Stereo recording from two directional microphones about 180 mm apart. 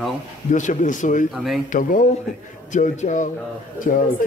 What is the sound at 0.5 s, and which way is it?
Speech, 45° left (ahead or behind).